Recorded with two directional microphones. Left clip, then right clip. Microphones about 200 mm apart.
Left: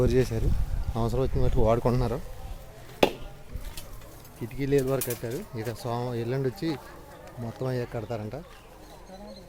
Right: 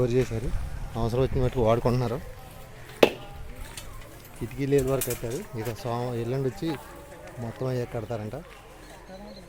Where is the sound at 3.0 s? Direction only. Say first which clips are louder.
Right 3 dB; 45° right (ahead or behind).